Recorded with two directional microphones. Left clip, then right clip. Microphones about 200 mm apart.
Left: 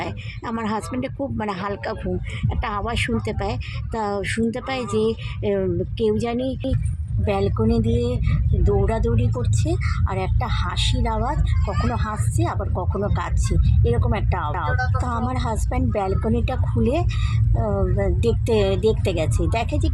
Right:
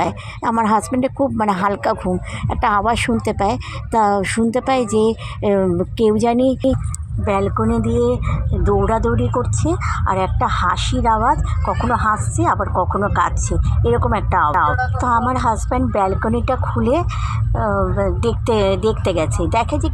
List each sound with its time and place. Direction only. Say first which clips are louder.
0.0 s speech: right 10 dB; 20° right (ahead or behind)
7.3 s speech: right 4 dB; 10° right (ahead or behind)